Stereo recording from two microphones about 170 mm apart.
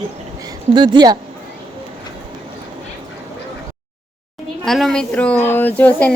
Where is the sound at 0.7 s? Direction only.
25° right (ahead or behind).